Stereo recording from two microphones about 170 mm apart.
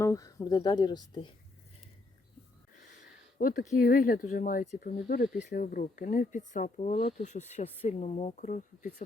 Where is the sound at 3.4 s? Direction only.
55° left (ahead or behind).